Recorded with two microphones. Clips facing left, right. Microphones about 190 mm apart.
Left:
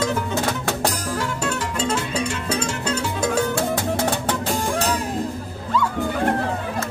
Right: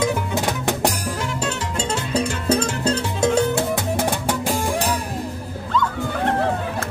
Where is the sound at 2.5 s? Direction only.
35° right (ahead or behind); by 4.9 s 10° right (ahead or behind).